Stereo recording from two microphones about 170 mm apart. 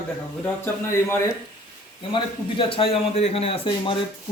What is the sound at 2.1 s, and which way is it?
Speech, 30° left (ahead or behind).